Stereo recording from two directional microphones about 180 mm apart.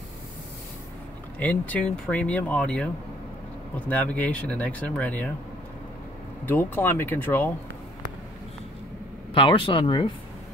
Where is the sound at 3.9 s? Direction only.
10° left (ahead or behind).